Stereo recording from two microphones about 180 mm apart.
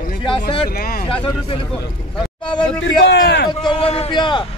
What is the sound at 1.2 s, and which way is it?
Speech, 30° left (ahead or behind).